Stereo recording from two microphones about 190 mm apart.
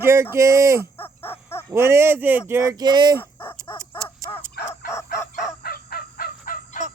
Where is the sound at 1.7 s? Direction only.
15° right (ahead or behind).